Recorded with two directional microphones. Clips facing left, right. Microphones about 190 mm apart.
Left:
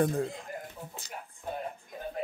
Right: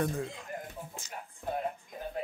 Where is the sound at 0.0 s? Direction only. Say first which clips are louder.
Left 5 dB; 35° left (ahead or behind).